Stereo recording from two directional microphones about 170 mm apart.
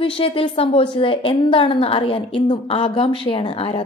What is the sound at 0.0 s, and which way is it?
A woman's voice, 30° left (ahead or behind).